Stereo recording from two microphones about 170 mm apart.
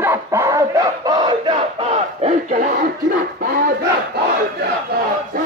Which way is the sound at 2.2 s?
50° right (ahead or behind).